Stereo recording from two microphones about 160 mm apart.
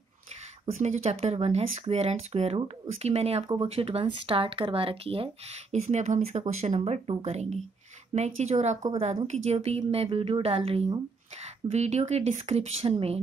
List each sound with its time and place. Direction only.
0.8 s speech: 45° right (ahead or behind)